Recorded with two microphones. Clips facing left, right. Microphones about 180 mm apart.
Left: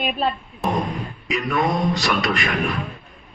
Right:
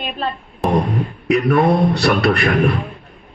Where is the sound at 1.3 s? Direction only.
60° right (ahead or behind).